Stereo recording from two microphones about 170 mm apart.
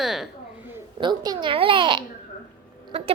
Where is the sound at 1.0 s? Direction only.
25° right (ahead or behind).